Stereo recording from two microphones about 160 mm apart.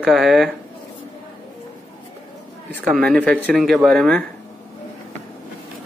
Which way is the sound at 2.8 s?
Centre (ahead or behind).